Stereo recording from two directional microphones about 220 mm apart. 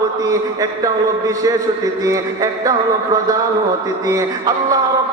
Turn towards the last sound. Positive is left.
turn(degrees=-15)  # may be behind; listen again after turning